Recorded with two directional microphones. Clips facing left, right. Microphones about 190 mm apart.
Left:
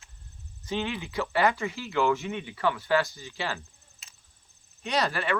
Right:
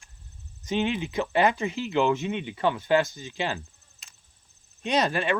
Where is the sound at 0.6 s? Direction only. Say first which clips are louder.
Right 5 dB; 20° right (ahead or behind).